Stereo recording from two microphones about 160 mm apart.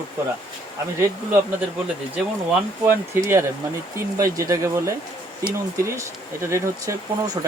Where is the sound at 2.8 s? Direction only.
15° right (ahead or behind).